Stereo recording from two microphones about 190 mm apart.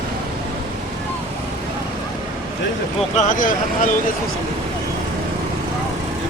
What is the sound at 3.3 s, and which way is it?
Speech, 45° left (ahead or behind).